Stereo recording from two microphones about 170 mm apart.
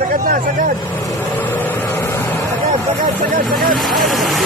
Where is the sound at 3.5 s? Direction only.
Centre (ahead or behind).